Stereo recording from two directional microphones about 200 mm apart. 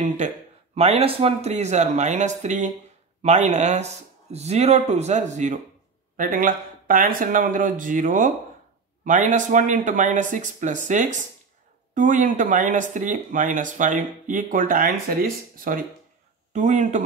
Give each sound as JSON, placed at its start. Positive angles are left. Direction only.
{"t": 0.7, "sound": "speech", "side_deg": -30}